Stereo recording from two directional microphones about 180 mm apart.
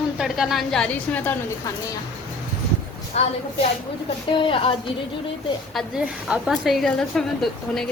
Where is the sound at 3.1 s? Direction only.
35° left (ahead or behind).